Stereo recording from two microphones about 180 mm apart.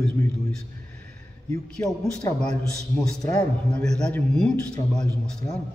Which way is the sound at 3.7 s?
5° left (ahead or behind).